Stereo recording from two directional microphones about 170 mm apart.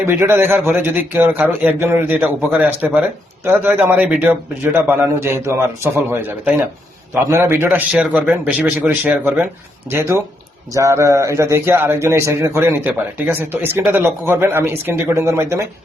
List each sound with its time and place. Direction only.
0.0 s a man's voice: 15° right (ahead or behind)